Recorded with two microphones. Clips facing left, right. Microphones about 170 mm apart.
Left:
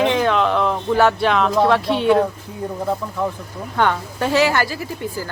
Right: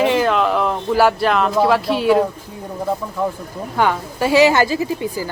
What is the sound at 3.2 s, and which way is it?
Speech, centre (ahead or behind).